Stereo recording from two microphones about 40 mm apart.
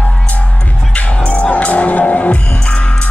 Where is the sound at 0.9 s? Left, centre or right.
Left.